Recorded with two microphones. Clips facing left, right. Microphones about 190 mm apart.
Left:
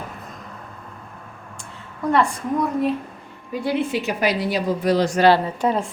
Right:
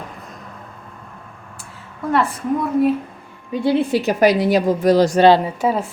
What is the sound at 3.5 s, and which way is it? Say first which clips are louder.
A woman's voice: right 5 dB; 25° right (ahead or behind).